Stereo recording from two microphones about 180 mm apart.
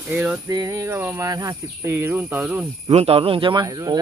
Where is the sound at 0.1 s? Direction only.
10° right (ahead or behind).